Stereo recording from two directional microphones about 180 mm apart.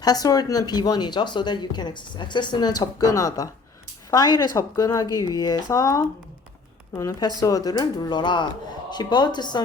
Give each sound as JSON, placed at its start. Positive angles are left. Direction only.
{"t": 0.0, "sound": "speech", "side_deg": 20}